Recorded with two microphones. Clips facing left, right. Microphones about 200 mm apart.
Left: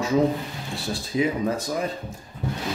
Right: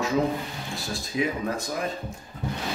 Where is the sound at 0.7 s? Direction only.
30° left (ahead or behind).